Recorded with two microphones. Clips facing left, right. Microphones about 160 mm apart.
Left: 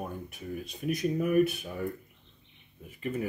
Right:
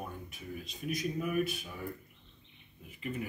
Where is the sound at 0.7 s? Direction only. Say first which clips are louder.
Left 6 dB; 55° left (ahead or behind).